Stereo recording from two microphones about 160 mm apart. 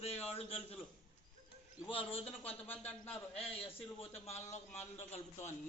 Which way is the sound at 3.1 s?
35° left (ahead or behind).